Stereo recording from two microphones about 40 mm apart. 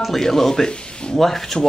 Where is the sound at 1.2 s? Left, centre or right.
Centre.